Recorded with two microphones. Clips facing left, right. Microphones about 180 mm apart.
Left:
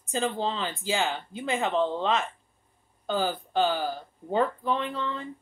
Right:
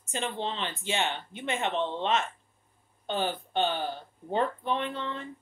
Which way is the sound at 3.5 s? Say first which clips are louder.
Left 4 dB; 90° left.